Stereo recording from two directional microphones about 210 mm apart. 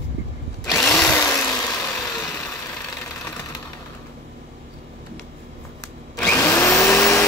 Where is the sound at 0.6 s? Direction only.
15° left (ahead or behind).